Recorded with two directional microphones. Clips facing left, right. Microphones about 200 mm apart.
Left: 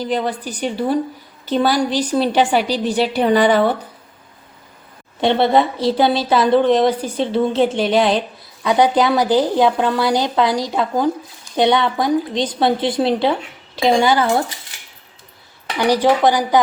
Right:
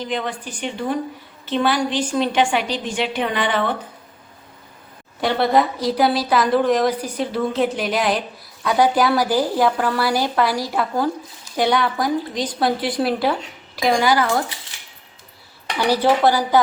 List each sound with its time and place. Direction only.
0.0 s a woman's voice: 35° left (ahead or behind)
5.2 s a woman's voice: 25° left (ahead or behind)
15.8 s speech: 15° left (ahead or behind)